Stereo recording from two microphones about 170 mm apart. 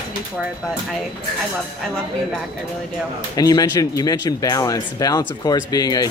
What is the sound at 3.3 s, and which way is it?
Speech, 20° left (ahead or behind).